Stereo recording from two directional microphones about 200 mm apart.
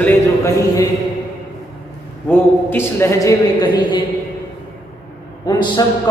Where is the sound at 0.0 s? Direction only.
15° left (ahead or behind).